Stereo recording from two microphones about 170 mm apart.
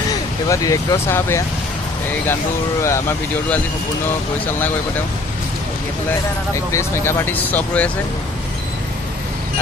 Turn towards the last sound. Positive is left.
turn(degrees=10)  # may be behind; listen again after turning